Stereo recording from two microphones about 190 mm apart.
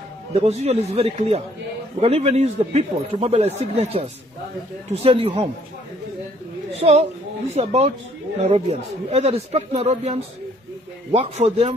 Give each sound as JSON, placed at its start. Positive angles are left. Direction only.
{"t": 0.3, "sound": "a man's voice", "side_deg": -35}
{"t": 6.7, "sound": "a man's voice", "side_deg": -35}